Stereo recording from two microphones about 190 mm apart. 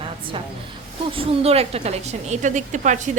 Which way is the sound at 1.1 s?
30° right (ahead or behind).